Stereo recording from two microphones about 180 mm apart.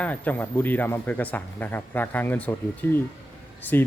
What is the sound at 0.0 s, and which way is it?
Speech, 10° left (ahead or behind).